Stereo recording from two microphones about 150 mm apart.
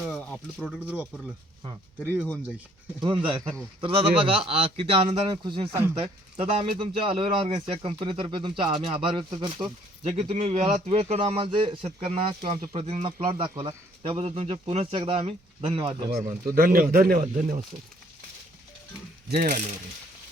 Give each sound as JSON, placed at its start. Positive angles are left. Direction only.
{"t": 0.6, "sound": "speech", "side_deg": -5}
{"t": 2.0, "sound": "speech", "side_deg": 10}
{"t": 3.0, "sound": "speech", "side_deg": -30}
{"t": 5.9, "sound": "speech", "side_deg": -45}
{"t": 16.6, "sound": "a man's voice", "side_deg": -75}
{"t": 19.3, "sound": "a man's voice", "side_deg": -65}